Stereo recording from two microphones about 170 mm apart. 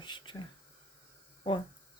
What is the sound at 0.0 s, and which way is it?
Whispering, 25° left (ahead or behind).